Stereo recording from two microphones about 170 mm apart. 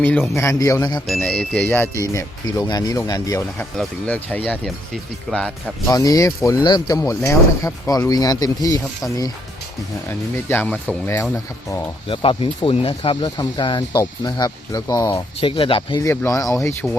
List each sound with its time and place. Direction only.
0.0 s speech: 10° left (ahead or behind)
1.0 s speech: centre (ahead or behind); by 3.7 s 20° left (ahead or behind)
3.8 s speech: 10° left (ahead or behind)
5.9 s speech: 20° left (ahead or behind)
12.0 s speech: 30° left (ahead or behind)
15.1 s speech: 30° left (ahead or behind)
16.0 s speech: 20° left (ahead or behind)